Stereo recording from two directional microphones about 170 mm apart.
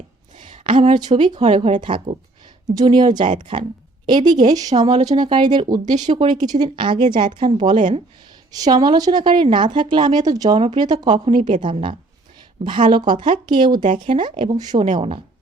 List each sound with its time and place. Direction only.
0.7 s speech: 40° right (ahead or behind)
0.9 s a woman's voice: 25° right (ahead or behind)
1.4 s a woman's voice: 40° right (ahead or behind)
5.8 s speech: 45° right (ahead or behind)
6.1 s a woman's voice: 25° right (ahead or behind)